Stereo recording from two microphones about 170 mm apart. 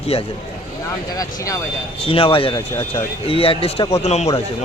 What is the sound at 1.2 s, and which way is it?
Speech, 20° left (ahead or behind).